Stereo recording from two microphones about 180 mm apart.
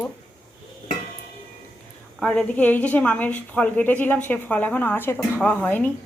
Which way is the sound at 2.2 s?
5° left (ahead or behind).